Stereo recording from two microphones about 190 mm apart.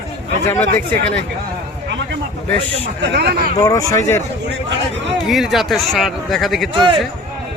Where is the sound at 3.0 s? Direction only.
60° right (ahead or behind).